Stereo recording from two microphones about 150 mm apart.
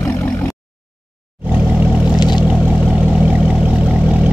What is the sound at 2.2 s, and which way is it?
Vehicle, 30° left (ahead or behind).